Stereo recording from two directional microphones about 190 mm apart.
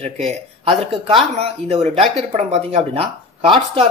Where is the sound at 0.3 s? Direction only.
30° right (ahead or behind).